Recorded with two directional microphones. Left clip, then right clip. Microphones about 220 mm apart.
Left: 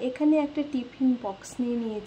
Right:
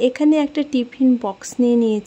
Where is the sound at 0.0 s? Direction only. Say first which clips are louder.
Right 8 dB; 45° right (ahead or behind).